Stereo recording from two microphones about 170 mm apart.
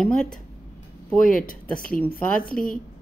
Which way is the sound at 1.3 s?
55° left (ahead or behind).